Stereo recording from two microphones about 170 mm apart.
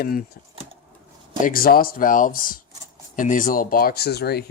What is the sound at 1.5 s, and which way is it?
Speech, 60° left (ahead or behind).